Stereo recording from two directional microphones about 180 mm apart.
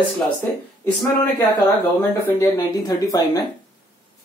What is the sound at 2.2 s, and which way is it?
Speech, 10° left (ahead or behind).